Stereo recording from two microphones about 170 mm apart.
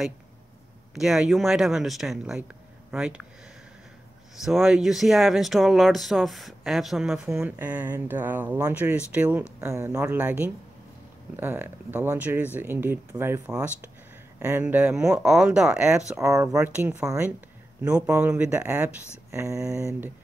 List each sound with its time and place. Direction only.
0.9 s speech: centre (ahead or behind)
4.4 s speech: centre (ahead or behind)
16.2 s speech: 20° right (ahead or behind)